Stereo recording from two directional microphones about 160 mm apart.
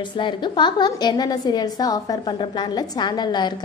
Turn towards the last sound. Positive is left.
turn(degrees=25)  # may be behind; listen again after turning